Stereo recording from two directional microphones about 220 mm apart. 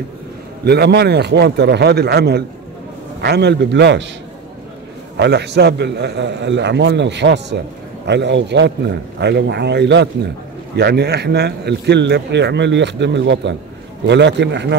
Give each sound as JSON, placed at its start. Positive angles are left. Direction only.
{"t": 0.7, "sound": "a man's voice", "side_deg": -50}
{"t": 5.1, "sound": "a man's voice", "side_deg": -50}